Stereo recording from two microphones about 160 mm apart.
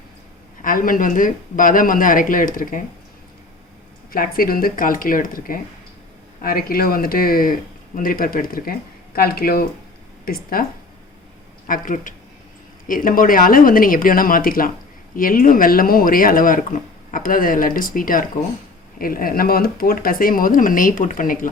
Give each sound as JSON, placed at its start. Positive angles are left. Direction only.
{"t": 0.6, "sound": "speech", "side_deg": 60}
{"t": 4.1, "sound": "speech", "side_deg": 65}